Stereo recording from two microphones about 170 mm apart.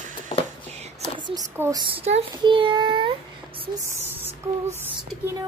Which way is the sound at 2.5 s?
30° right (ahead or behind).